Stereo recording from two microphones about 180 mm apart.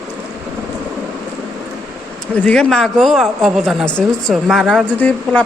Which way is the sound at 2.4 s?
5° left (ahead or behind).